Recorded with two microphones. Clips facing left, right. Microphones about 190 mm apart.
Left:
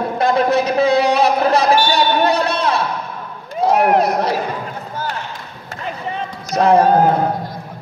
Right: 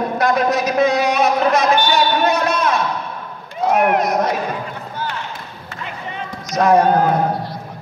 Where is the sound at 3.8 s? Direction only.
35° left (ahead or behind).